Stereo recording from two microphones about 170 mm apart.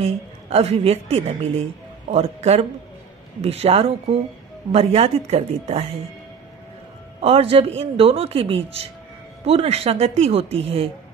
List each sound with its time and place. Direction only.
0.0 s speech: 35° right (ahead or behind)
7.2 s speech: 35° right (ahead or behind)